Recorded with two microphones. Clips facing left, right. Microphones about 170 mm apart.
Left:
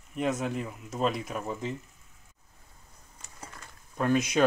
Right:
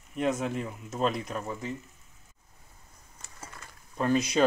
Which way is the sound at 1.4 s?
15° left (ahead or behind).